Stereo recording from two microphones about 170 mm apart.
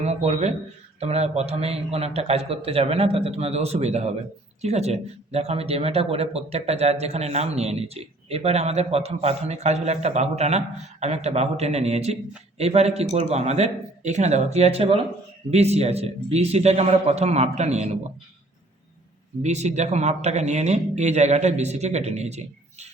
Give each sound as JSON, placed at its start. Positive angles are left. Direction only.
{"t": 0.0, "sound": "speech", "side_deg": -40}
{"t": 19.4, "sound": "speech", "side_deg": -40}